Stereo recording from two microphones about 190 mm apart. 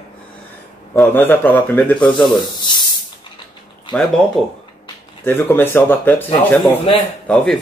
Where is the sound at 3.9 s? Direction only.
5° left (ahead or behind).